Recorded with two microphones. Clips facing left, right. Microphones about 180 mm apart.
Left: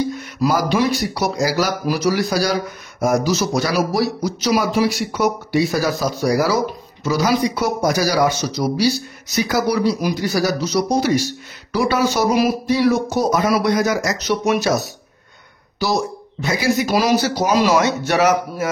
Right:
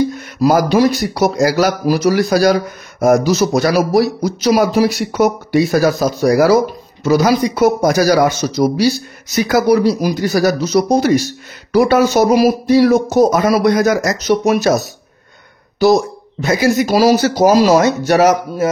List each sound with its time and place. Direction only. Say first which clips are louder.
0.4 s speech: right 6 dB; 45° right (ahead or behind)
15.8 s speech: right 9 dB; 45° right (ahead or behind)